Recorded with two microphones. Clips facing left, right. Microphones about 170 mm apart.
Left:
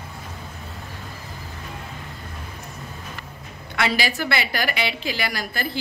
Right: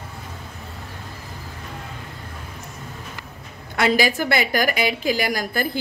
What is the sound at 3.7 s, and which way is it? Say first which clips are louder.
A woman's voice: right 5 dB; 45° right (ahead or behind).